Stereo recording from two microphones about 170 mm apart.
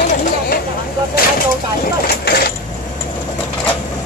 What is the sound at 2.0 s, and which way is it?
Vehicle, 65° left (ahead or behind).